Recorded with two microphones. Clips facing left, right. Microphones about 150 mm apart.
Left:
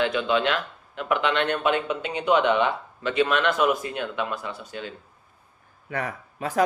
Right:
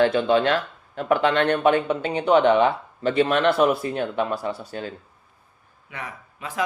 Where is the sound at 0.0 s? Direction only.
35° right (ahead or behind).